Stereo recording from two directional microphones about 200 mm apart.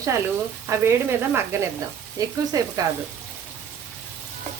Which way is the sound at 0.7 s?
10° right (ahead or behind).